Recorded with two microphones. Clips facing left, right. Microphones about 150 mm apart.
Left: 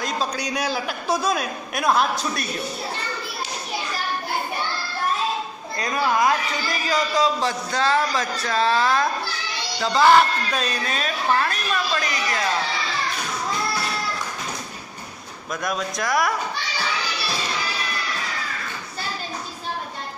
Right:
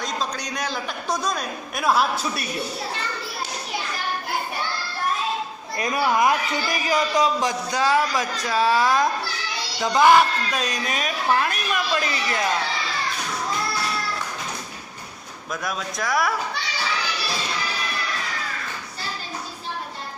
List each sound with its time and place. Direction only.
0.0 s a man's voice: 10° left (ahead or behind); by 2.5 s 5° right (ahead or behind)
5.8 s a woman's voice: 20° right (ahead or behind)
12.0 s a woman's voice: 25° right (ahead or behind)
15.6 s a man's voice: centre (ahead or behind)